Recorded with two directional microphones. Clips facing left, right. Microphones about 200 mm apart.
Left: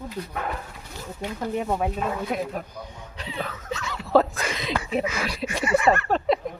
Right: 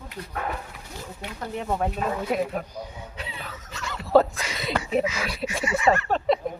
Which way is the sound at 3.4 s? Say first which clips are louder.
Left 4 dB; 55° left (ahead or behind).